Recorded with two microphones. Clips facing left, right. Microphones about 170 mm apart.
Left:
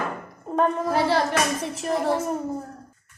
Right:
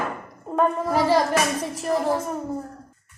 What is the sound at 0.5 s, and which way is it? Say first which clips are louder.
A woman's voice: right 1 dB; 5° right (ahead or behind).